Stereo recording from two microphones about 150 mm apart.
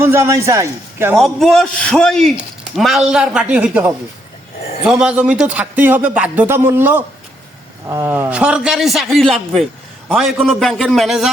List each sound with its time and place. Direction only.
0.0 s a man's voice: 15° right (ahead or behind)
1.2 s a man's voice: centre (ahead or behind)